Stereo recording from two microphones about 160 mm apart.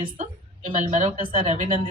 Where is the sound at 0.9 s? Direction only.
45° right (ahead or behind).